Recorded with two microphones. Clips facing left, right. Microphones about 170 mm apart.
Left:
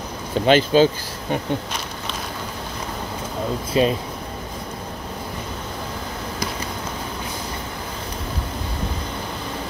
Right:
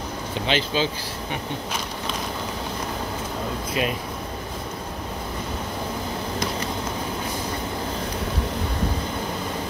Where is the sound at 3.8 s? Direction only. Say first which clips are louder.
Left 8 dB; 30° left (ahead or behind).